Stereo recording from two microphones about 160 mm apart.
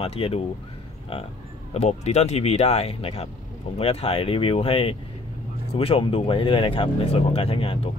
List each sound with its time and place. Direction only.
0.0 s speech: 35° left (ahead or behind)